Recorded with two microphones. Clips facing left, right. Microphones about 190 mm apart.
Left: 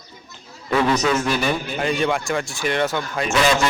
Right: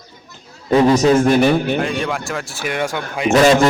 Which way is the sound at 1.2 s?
60° right (ahead or behind).